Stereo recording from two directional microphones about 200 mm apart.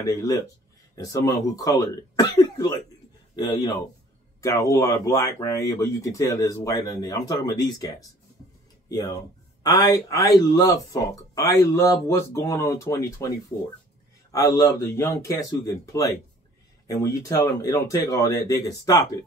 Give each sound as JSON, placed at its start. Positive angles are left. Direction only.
{"t": 0.0, "sound": "speech", "side_deg": 15}
{"t": 14.3, "sound": "speech", "side_deg": 20}